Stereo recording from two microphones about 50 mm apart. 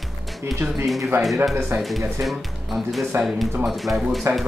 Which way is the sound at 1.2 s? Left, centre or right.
Centre.